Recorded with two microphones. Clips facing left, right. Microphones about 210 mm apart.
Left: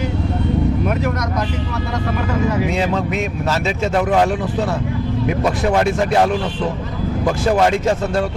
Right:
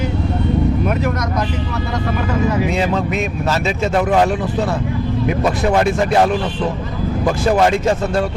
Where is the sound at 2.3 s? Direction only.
20° right (ahead or behind).